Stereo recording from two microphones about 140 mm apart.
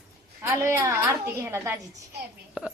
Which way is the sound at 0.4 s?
20° right (ahead or behind).